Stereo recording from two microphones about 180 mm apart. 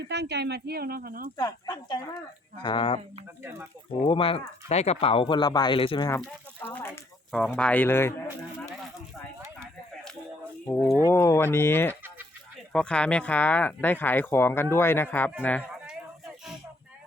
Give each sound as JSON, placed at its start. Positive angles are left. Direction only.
{"t": 0.1, "sound": "speech", "side_deg": -70}
{"t": 1.4, "sound": "speech", "side_deg": 20}
{"t": 4.0, "sound": "speech", "side_deg": 30}
{"t": 6.1, "sound": "speech", "side_deg": 10}
{"t": 7.3, "sound": "speech", "side_deg": 5}
{"t": 11.1, "sound": "speech", "side_deg": 15}
{"t": 15.9, "sound": "a sound", "side_deg": -5}